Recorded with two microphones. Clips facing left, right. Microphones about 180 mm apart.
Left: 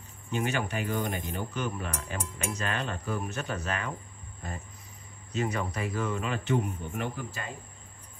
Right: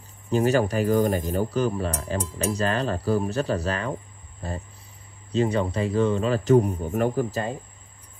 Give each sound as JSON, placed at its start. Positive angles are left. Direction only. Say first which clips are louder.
{"t": 0.3, "sound": "speech", "louder": "right 10 dB", "side_deg": -35}